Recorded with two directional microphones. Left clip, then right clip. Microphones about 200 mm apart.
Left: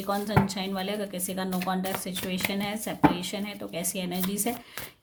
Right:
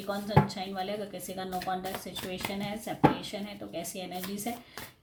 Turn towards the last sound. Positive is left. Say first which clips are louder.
# left 5 dB
turn(degrees=45)  # may be behind; listen again after turning